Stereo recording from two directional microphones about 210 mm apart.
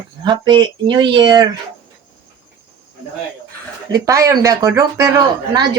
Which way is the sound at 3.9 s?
15° right (ahead or behind).